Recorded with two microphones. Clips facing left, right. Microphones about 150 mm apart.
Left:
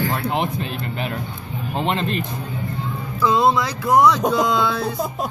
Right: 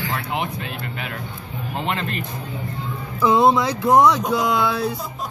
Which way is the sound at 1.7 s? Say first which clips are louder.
Left 4 dB; 25° left (ahead or behind).